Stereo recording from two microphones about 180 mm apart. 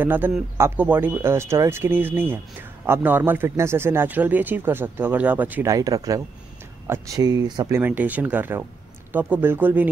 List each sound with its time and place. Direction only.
0.0 s a man's voice: 10° right (ahead or behind)
7.8 s a man's voice: 10° right (ahead or behind)